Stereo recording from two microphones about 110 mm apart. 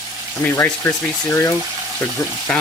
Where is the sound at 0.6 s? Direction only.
20° left (ahead or behind).